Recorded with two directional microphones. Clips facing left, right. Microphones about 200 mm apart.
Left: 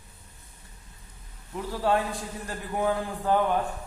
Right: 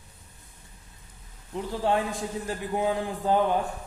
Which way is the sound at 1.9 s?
20° right (ahead or behind).